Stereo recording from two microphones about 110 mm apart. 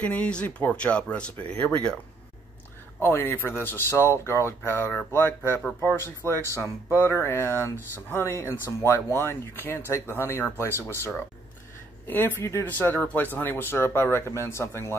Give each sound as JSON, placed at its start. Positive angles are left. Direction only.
{"t": 0.0, "sound": "speech", "side_deg": 10}
{"t": 3.0, "sound": "speech", "side_deg": 25}
{"t": 12.1, "sound": "speech", "side_deg": 20}